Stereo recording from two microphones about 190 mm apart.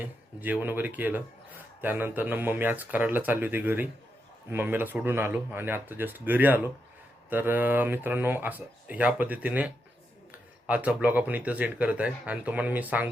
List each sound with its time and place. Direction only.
0.0 s a man's voice: 10° right (ahead or behind)